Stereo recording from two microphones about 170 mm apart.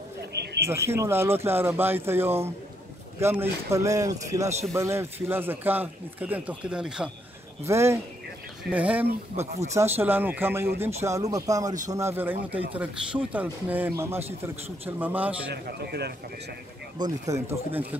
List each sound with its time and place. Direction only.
0.3 s a sound: 75° right (ahead or behind)
0.7 s a man's voice: 15° right (ahead or behind)
7.6 s a man's voice: 15° right (ahead or behind)
15.5 s a man's voice: 75° right (ahead or behind)
17.0 s a man's voice: 20° right (ahead or behind)